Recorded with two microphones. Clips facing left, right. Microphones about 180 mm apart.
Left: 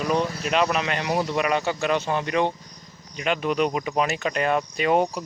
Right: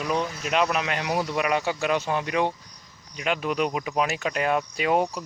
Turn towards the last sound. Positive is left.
turn(degrees=-5)  # may be behind; listen again after turning